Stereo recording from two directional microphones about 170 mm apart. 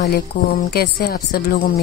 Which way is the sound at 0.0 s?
65° left (ahead or behind).